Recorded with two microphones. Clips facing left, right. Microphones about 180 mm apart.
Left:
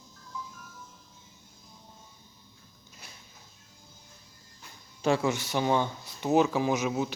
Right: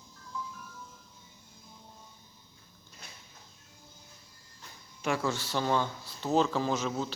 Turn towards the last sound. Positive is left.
turn(degrees=15)  # may be behind; listen again after turning